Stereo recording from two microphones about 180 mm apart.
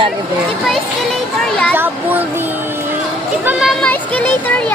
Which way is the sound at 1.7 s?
10° right (ahead or behind).